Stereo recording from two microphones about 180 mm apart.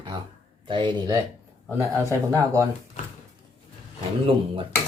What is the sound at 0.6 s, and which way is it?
Speech, 25° right (ahead or behind).